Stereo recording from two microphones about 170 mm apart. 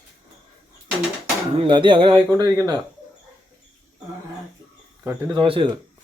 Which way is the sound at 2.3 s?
20° right (ahead or behind).